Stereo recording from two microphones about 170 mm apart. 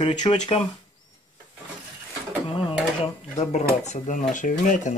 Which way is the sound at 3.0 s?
40° left (ahead or behind).